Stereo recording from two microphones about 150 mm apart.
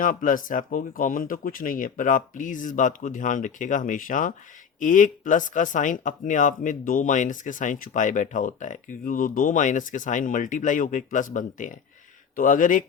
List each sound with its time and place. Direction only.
0.0 s speech: 65° left (ahead or behind)